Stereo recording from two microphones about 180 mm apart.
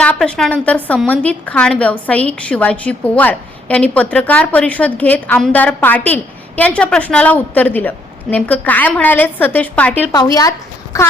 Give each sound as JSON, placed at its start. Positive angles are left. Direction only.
{"t": 0.0, "sound": "a woman's voice", "side_deg": 5}
{"t": 10.1, "sound": "a woman's voice", "side_deg": 20}